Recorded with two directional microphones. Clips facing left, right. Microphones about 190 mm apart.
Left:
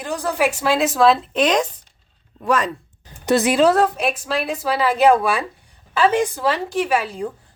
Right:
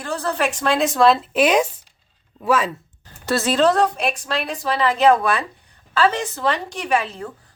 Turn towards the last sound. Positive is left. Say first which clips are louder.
# left 2 dB
turn(degrees=10)  # may be behind; listen again after turning